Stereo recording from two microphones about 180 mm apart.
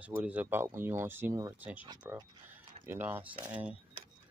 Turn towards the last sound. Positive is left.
turn(degrees=-10)  # may be behind; listen again after turning